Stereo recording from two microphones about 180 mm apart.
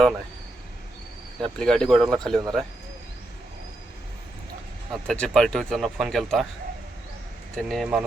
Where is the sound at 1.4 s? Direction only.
5° left (ahead or behind).